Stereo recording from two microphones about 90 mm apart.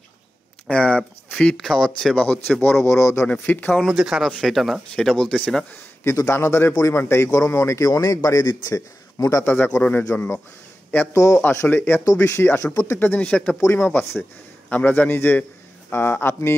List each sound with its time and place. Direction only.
0.7 s speech: 15° left (ahead or behind)
2.2 s a man's voice: 20° left (ahead or behind)
3.3 s a man's voice: 20° left (ahead or behind)
3.7 s speech: centre (ahead or behind)
6.0 s a man's voice: 30° left (ahead or behind)
9.4 s a man's voice: 20° left (ahead or behind)
11.1 s a man's voice: 35° left (ahead or behind)
11.5 s a man's voice: 25° left (ahead or behind)
13.1 s speech: 15° left (ahead or behind)
13.6 s a man's voice: 25° left (ahead or behind)